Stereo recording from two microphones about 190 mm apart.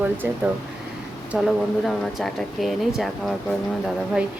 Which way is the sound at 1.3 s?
10° right (ahead or behind).